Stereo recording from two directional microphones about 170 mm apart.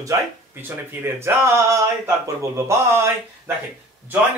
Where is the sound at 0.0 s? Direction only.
15° right (ahead or behind).